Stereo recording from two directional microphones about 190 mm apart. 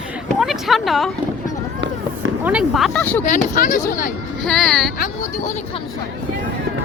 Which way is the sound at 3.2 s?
40° left (ahead or behind).